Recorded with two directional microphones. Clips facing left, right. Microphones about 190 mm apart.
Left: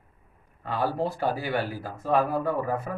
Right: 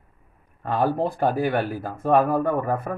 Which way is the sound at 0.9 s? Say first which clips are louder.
Right 5 dB; 50° right (ahead or behind).